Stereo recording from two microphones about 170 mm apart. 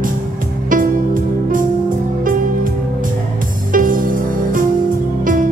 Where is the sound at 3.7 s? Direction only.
55° right (ahead or behind).